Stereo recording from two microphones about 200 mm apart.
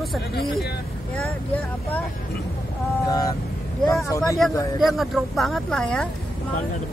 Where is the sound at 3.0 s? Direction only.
15° left (ahead or behind).